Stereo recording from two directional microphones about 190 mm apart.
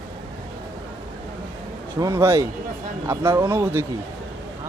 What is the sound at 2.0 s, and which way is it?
Speech, 15° right (ahead or behind).